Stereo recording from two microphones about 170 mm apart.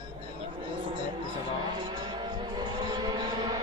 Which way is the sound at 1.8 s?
25° right (ahead or behind).